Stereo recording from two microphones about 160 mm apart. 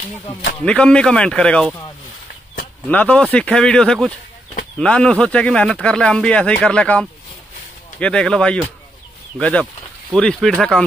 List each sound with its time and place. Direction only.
0.7 s speech: 5° left (ahead or behind)
2.9 s speech: 10° left (ahead or behind)